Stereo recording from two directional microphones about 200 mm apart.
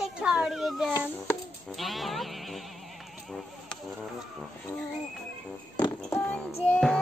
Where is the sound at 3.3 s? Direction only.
Centre (ahead or behind).